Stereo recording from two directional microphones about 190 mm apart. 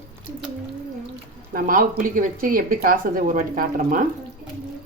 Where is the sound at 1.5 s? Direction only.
45° right (ahead or behind).